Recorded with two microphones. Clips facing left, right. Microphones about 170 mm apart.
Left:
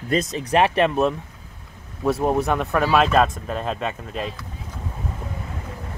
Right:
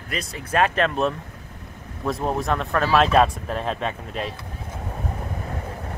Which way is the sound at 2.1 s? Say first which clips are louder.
Left 4 dB; 5° left (ahead or behind).